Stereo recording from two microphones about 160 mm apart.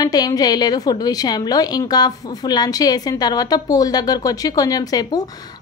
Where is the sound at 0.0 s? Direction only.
25° left (ahead or behind).